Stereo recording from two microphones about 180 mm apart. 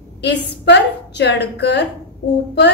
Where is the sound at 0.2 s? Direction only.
70° left (ahead or behind).